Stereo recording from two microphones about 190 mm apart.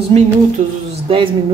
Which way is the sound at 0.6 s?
40° right (ahead or behind).